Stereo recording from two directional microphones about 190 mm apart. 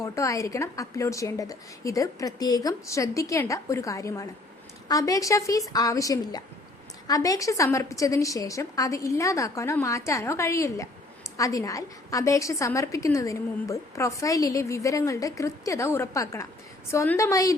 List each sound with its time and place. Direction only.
0.0 s a woman's voice: 15° left (ahead or behind)